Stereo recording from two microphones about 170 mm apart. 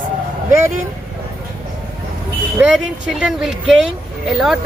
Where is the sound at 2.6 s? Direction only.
5° right (ahead or behind).